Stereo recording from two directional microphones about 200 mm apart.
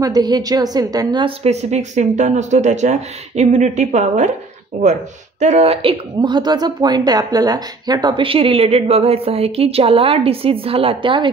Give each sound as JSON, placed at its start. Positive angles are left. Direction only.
{"t": 0.0, "sound": "a woman's voice", "side_deg": -20}
{"t": 5.4, "sound": "a woman's voice", "side_deg": -35}